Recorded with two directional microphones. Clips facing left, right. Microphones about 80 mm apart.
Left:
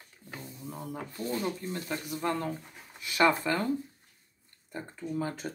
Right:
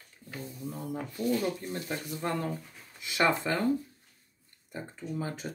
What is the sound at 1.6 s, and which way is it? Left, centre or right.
Speech, right.